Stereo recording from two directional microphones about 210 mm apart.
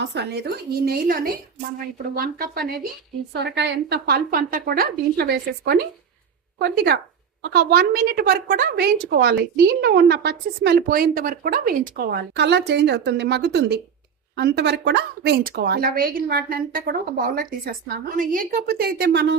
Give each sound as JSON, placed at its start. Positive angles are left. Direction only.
{"t": 0.0, "sound": "a woman's voice", "side_deg": -55}